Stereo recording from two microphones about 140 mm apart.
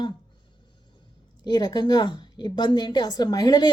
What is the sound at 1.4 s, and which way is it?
A woman's voice, 30° left (ahead or behind).